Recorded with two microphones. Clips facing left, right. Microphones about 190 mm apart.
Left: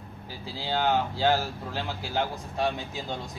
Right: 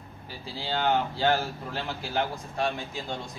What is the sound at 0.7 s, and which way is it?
Speech, 10° left (ahead or behind).